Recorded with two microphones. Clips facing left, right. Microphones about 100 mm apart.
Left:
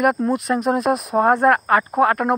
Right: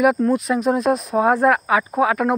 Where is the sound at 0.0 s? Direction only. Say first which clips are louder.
Right 2 dB; centre (ahead or behind).